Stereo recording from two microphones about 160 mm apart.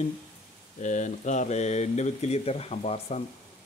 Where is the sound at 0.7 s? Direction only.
50° left (ahead or behind).